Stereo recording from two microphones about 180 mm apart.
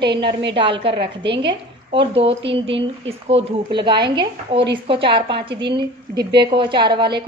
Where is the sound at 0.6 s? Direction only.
30° right (ahead or behind).